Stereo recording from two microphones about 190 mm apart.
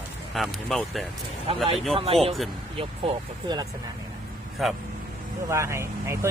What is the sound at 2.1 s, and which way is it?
Speech, 30° right (ahead or behind).